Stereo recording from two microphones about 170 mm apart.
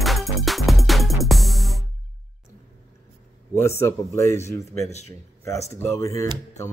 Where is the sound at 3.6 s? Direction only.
15° left (ahead or behind).